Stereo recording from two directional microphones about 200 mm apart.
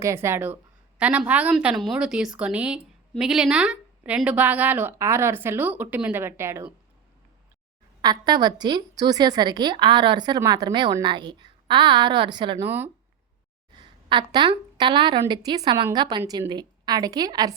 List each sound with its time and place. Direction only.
0.0 s a woman's voice: 15° right (ahead or behind)
8.0 s a woman's voice: 20° right (ahead or behind)
12.6 s a woman's voice: 10° right (ahead or behind)
13.7 s a woman's voice: 25° right (ahead or behind)